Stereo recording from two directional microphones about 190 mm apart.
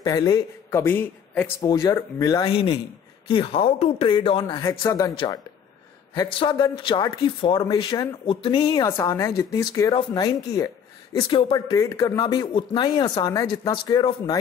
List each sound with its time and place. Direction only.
0.0 s a man's voice: 20° left (ahead or behind)
1.6 s a man's voice: 20° left (ahead or behind)
8.8 s a man's voice: 15° left (ahead or behind)